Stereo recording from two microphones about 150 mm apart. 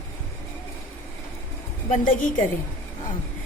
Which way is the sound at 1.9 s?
60° left (ahead or behind).